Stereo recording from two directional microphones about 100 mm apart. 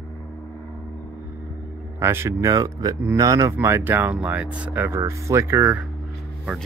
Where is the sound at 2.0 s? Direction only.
25° right (ahead or behind).